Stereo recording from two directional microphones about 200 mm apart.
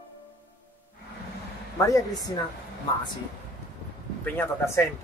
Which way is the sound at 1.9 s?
15° left (ahead or behind).